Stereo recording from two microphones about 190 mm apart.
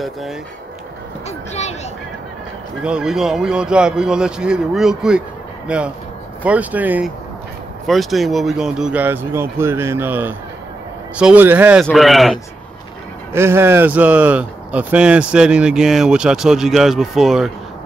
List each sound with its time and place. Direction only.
0.0 s speech: centre (ahead or behind)
1.5 s a sound: 35° left (ahead or behind)
2.8 s speech: 5° right (ahead or behind)
13.3 s speech: 15° right (ahead or behind)